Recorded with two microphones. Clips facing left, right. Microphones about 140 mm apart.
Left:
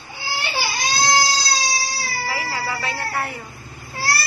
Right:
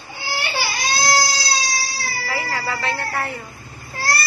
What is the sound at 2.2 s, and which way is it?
Vehicle, 15° left (ahead or behind).